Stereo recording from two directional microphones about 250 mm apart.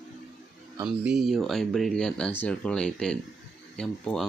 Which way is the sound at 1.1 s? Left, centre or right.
Centre.